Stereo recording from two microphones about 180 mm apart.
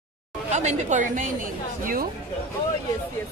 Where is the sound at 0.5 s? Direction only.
40° right (ahead or behind).